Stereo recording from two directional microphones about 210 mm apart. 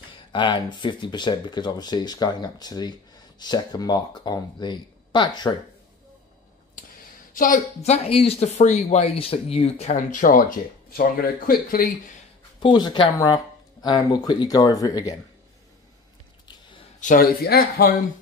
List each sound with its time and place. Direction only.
0.3 s speech: 20° left (ahead or behind)
6.8 s a sound: 40° left (ahead or behind)
7.3 s speech: 40° left (ahead or behind)
12.6 s speech: 20° left (ahead or behind)
17.0 s speech: 40° left (ahead or behind)